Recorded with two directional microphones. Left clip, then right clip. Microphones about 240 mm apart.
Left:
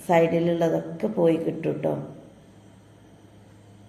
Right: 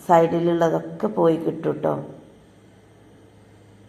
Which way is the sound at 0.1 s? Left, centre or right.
Centre.